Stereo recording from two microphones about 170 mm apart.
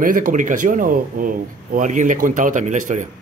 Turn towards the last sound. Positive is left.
turn(degrees=-45)  # may be behind; listen again after turning